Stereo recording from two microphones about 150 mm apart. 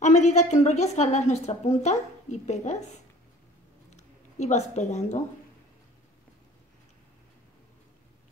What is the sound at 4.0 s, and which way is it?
Speech, 50° left (ahead or behind).